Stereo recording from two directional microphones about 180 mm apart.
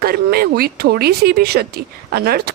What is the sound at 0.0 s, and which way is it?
Speech, 60° right (ahead or behind).